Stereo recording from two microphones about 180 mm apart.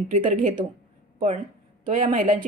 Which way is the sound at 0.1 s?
45° right (ahead or behind).